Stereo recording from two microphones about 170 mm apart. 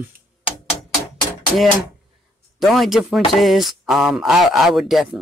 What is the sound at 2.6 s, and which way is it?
Speech, centre (ahead or behind).